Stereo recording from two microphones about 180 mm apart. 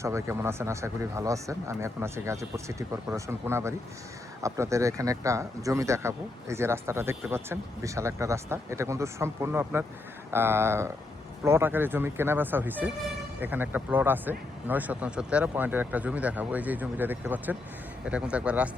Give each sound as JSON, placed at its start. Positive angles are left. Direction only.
{"t": 0.0, "sound": "speech", "side_deg": -15}